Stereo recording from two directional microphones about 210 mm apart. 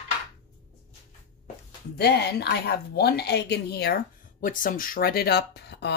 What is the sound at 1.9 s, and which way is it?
Speech, 50° left (ahead or behind).